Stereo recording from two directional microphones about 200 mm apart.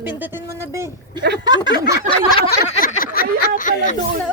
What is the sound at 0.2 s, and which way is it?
A woman's voice, 10° right (ahead or behind).